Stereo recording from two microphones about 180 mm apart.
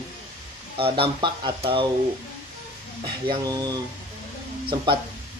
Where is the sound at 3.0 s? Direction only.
25° right (ahead or behind).